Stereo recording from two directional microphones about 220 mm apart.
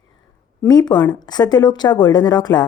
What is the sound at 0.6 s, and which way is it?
Speech, 20° left (ahead or behind).